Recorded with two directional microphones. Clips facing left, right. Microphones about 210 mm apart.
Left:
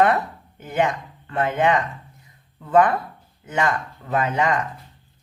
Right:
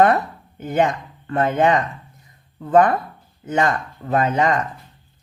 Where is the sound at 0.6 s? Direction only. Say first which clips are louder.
Right 3 dB; 40° right (ahead or behind).